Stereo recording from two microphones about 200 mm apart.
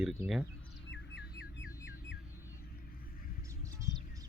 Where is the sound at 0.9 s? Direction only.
60° left (ahead or behind).